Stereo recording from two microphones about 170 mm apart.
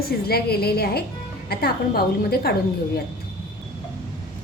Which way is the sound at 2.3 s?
65° left (ahead or behind).